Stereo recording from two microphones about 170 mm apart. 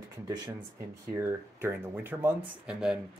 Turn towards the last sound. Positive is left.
turn(degrees=-5)  # may be behind; listen again after turning